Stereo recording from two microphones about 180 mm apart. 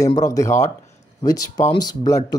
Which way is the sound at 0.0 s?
20° left (ahead or behind).